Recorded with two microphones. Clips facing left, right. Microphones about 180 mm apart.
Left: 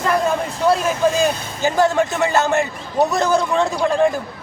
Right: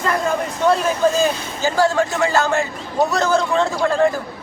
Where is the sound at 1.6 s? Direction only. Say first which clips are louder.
Left 1 dB; 20° left (ahead or behind).